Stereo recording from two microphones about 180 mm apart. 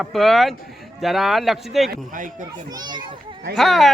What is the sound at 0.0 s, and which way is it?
Speech, centre (ahead or behind).